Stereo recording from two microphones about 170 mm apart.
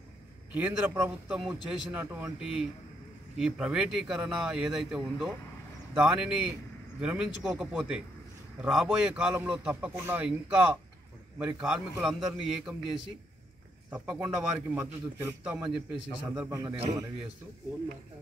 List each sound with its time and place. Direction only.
0.5 s a man's voice: 5° right (ahead or behind)
16.4 s a man's voice: 15° right (ahead or behind)